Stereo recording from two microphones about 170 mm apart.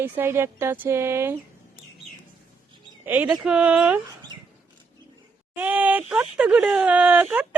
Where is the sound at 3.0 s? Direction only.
5° right (ahead or behind).